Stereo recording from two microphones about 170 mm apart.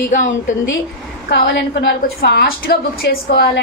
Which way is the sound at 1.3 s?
85° left.